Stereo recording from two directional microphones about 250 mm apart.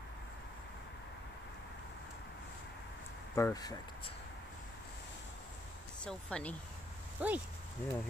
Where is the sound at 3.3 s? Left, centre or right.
Centre.